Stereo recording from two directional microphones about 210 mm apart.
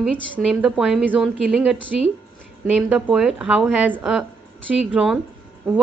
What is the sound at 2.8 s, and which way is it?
Speech, 5° right (ahead or behind).